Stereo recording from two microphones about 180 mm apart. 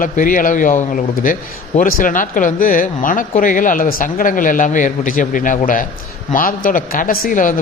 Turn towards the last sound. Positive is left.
turn(degrees=45)  # may be behind; listen again after turning